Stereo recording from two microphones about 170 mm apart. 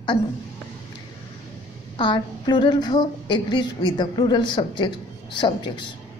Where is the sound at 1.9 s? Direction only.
25° left (ahead or behind).